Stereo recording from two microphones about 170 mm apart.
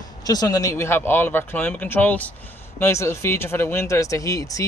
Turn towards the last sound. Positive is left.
turn(degrees=20)  # may be behind; listen again after turning